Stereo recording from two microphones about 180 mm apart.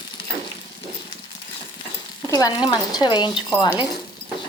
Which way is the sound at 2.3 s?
20° left (ahead or behind).